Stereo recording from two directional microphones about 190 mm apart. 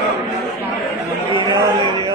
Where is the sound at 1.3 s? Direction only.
20° right (ahead or behind).